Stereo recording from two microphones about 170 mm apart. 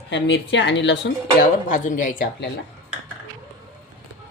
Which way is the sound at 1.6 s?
50° left (ahead or behind).